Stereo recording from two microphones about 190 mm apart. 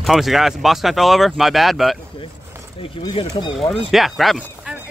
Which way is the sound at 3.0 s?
25° left (ahead or behind).